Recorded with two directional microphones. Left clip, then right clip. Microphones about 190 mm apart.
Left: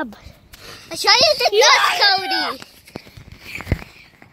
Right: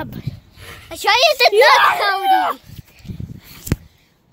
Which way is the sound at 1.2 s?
20° right (ahead or behind).